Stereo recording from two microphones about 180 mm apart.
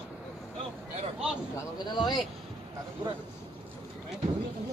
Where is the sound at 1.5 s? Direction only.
25° left (ahead or behind).